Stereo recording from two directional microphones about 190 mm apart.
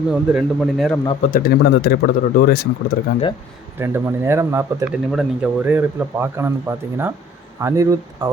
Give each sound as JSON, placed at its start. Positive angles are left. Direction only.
{"t": 0.1, "sound": "speech", "side_deg": 0}
{"t": 1.2, "sound": "speech", "side_deg": 50}
{"t": 3.8, "sound": "speech", "side_deg": -15}
{"t": 4.9, "sound": "speech", "side_deg": -5}